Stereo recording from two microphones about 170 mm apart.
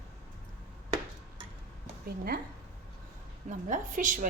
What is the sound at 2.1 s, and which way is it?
Speech, 65° right (ahead or behind).